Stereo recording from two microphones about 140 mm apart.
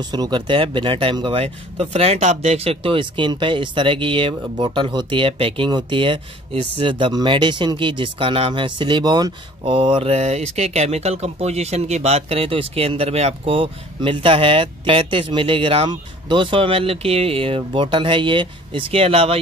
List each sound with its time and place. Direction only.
0.1 s speech: 35° right (ahead or behind)